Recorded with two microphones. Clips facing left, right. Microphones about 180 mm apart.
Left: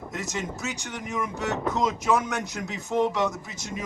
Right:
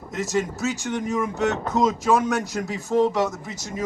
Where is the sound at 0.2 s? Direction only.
45° right (ahead or behind).